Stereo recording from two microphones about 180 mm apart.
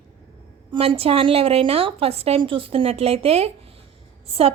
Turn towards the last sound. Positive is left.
turn(degrees=-35)  # may be behind; listen again after turning